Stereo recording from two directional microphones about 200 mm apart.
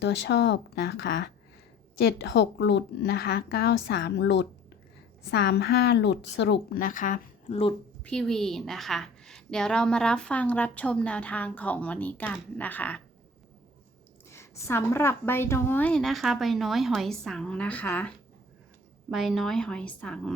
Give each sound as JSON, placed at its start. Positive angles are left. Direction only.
{"t": 0.0, "sound": "a woman's voice", "side_deg": 60}
{"t": 7.4, "sound": "speech", "side_deg": 25}
{"t": 8.0, "sound": "a woman's voice", "side_deg": 5}
{"t": 14.3, "sound": "a woman's voice", "side_deg": 10}
{"t": 19.1, "sound": "a woman's voice", "side_deg": 0}